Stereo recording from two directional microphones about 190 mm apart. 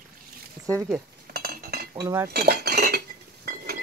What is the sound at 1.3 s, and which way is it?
Chink, 55° right (ahead or behind).